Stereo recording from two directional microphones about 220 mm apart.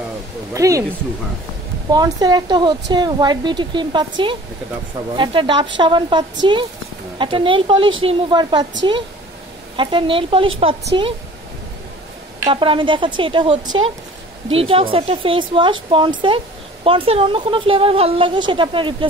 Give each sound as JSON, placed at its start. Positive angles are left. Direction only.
{"t": 0.6, "sound": "speech", "side_deg": -15}
{"t": 1.9, "sound": "a woman's voice", "side_deg": -15}
{"t": 5.1, "sound": "a woman's voice", "side_deg": -20}
{"t": 9.8, "sound": "a woman's voice", "side_deg": -20}
{"t": 12.4, "sound": "a woman's voice", "side_deg": -20}